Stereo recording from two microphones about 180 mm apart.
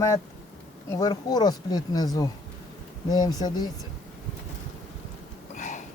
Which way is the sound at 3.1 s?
20° left (ahead or behind).